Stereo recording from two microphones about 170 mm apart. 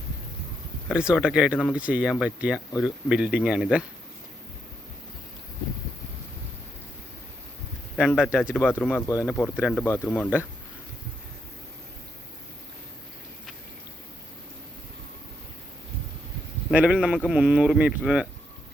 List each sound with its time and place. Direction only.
0.9 s speech: 5° right (ahead or behind)
7.9 s speech: centre (ahead or behind)
8.5 s speech: 10° left (ahead or behind)
16.7 s speech: 5° right (ahead or behind)